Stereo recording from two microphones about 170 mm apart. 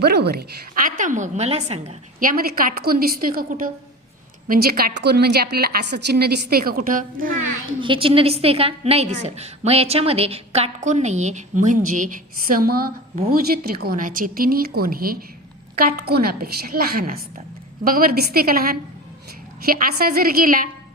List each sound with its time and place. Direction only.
0.0 s a woman's voice: 70° right (ahead or behind); by 2.0 s 35° right (ahead or behind)
2.1 s a woman's voice: 55° right (ahead or behind)
7.8 s a woman's voice: 30° right (ahead or behind); by 20.7 s 55° right (ahead or behind)